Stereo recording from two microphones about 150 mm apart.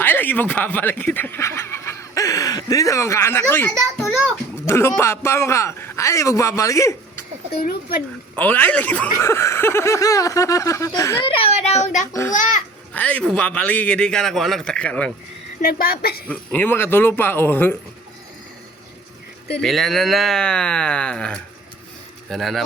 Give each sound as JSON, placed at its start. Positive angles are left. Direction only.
{"t": 0.0, "sound": "a man's voice", "side_deg": 15}
{"t": 7.5, "sound": "speech", "side_deg": 90}
{"t": 8.4, "sound": "a man's voice", "side_deg": 10}
{"t": 11.2, "sound": "a child's voice", "side_deg": 40}
{"t": 12.3, "sound": "a child's voice", "side_deg": 60}
{"t": 12.9, "sound": "a man's voice", "side_deg": 10}
{"t": 15.8, "sound": "a woman's voice", "side_deg": 90}
{"t": 16.3, "sound": "a man's voice", "side_deg": 10}
{"t": 19.5, "sound": "speech", "side_deg": 0}